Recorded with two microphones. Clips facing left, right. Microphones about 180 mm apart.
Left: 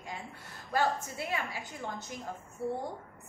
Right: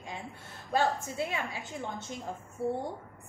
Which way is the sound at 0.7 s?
20° right (ahead or behind).